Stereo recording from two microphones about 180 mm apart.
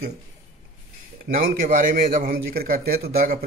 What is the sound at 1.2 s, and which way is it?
A man's voice, 50° right (ahead or behind).